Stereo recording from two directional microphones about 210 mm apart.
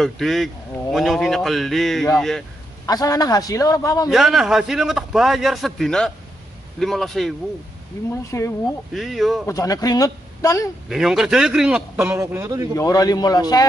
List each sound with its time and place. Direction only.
0.0 s a man's voice: centre (ahead or behind)
2.9 s a man's voice: 20° left (ahead or behind)
4.1 s a man's voice: centre (ahead or behind)
8.3 s a man's voice: 15° left (ahead or behind)
8.9 s a man's voice: centre (ahead or behind)
9.5 s a man's voice: 15° left (ahead or behind)
10.9 s a man's voice: centre (ahead or behind)
12.7 s a man's voice: 15° left (ahead or behind)